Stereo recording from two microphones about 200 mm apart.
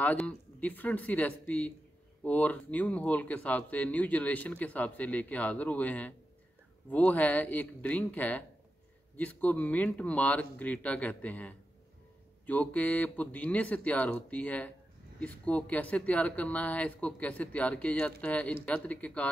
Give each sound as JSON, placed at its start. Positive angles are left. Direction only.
{"t": 0.0, "sound": "speech", "side_deg": 5}